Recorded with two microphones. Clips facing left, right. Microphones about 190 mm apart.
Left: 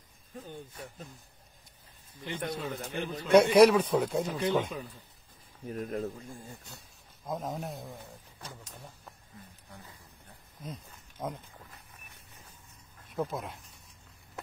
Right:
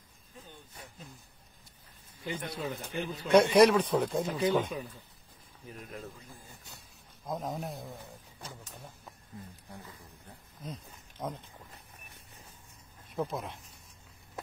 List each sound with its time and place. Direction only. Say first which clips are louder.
2.5 s speech: left 1 dB; 5° right (ahead or behind)
2.9 s a man's voice: left 1 dB; 45° left (ahead or behind)
3.3 s speech: left 2 dB; 5° left (ahead or behind)
5.7 s a man's voice: left 10 dB; 45° left (ahead or behind)
7.2 s speech: even; centre (ahead or behind)
10.6 s speech: even; 5° left (ahead or behind)
13.1 s speech: left 1 dB; centre (ahead or behind)